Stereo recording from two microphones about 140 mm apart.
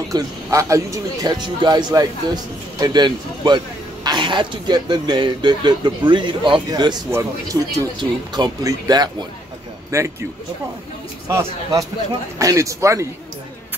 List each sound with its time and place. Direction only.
0.1 s speech: 20° right (ahead or behind)
7.1 s speech: 20° right (ahead or behind)
11.2 s speech: 25° right (ahead or behind)